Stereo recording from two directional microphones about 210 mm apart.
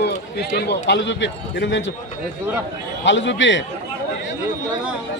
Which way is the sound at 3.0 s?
60° left (ahead or behind).